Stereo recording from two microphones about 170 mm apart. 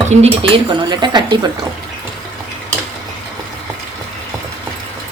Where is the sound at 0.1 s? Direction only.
40° right (ahead or behind).